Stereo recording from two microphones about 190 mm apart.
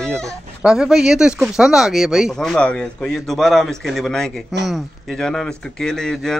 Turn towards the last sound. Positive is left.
turn(degrees=5)  # may be behind; listen again after turning